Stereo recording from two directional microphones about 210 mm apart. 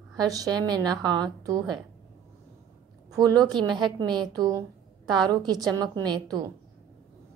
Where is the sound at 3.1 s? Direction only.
20° right (ahead or behind).